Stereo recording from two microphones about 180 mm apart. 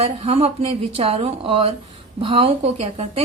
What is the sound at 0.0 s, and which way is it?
A woman's voice, 30° right (ahead or behind).